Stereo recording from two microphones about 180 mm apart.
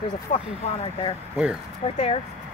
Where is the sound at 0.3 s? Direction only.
45° left (ahead or behind).